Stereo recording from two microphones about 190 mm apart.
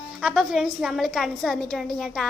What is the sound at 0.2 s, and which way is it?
A woman's voice, centre (ahead or behind).